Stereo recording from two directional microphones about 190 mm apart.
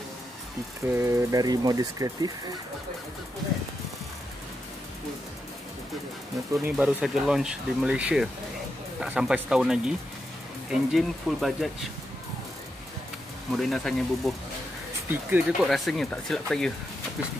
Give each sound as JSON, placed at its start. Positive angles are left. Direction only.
{"t": 0.8, "sound": "speech", "side_deg": -15}
{"t": 6.6, "sound": "speech", "side_deg": -5}
{"t": 13.5, "sound": "speech", "side_deg": 0}
{"t": 15.0, "sound": "speech", "side_deg": -10}